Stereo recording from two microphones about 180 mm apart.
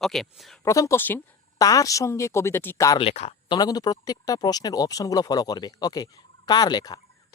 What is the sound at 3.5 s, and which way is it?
Speech, 20° left (ahead or behind).